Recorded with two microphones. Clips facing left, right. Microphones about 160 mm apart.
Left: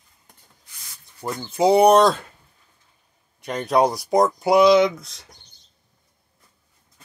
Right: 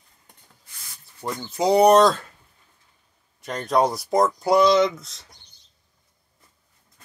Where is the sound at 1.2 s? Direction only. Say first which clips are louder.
Left 4 dB; centre (ahead or behind).